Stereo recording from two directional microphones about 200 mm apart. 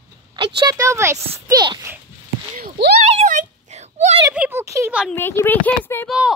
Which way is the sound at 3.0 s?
35° right (ahead or behind).